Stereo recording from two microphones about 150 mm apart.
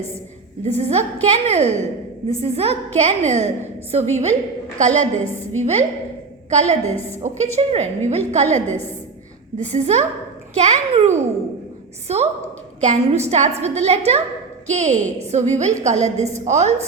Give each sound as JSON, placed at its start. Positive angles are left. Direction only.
{"t": 0.8, "sound": "a woman's voice", "side_deg": -45}